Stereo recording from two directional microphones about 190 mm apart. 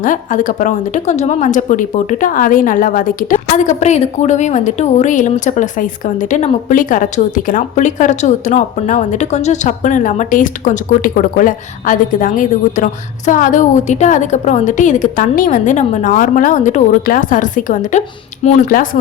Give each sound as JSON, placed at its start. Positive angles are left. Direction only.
{"t": 0.0, "sound": "a woman's voice", "side_deg": 45}